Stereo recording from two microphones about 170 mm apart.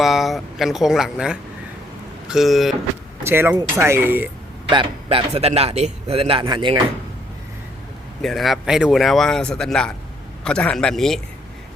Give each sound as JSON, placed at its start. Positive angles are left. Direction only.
{"t": 0.0, "sound": "speech", "side_deg": 0}
{"t": 3.2, "sound": "speech", "side_deg": -15}
{"t": 4.7, "sound": "a man's voice", "side_deg": -30}
{"t": 8.2, "sound": "speech", "side_deg": 0}